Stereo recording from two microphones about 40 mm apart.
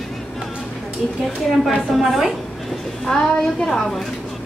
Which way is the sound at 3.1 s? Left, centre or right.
Centre.